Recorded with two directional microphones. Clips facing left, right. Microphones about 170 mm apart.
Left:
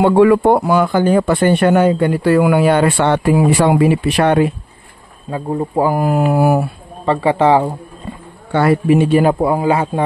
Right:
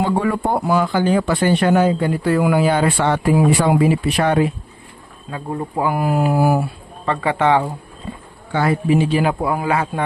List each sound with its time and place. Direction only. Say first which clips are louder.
0.0 s speech: left 9 dB; 85° left; by 4.5 s 65° left (ahead or behind)
5.8 s mantra: left 4 dB; 40° left (ahead or behind); by 6.6 s 60° left (ahead or behind)
7.1 s a man's voice: left 5 dB; 30° left (ahead or behind)
8.5 s speech: left 5 dB; 65° left (ahead or behind)
9.3 s speech: left 5 dB; 25° left (ahead or behind)